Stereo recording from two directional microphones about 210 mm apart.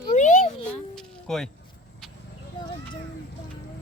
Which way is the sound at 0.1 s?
35° left (ahead or behind).